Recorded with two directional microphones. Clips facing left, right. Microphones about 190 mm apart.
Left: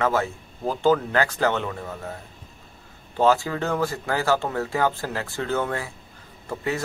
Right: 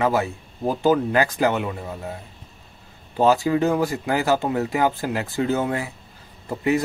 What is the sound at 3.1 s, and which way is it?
Speech, 15° right (ahead or behind).